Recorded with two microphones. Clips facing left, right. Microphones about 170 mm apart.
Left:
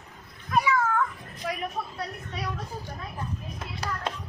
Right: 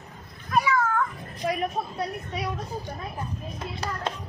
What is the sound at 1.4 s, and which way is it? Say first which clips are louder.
Speech: right 5 dB; 30° right (ahead or behind).